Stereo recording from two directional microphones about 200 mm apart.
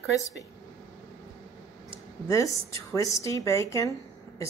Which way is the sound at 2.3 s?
15° left (ahead or behind).